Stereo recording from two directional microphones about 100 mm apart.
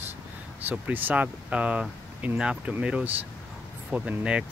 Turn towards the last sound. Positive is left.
turn(degrees=-10)  # may be behind; listen again after turning